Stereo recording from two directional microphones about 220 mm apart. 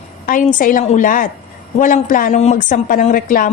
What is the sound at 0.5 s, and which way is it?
A woman's voice, 35° left (ahead or behind).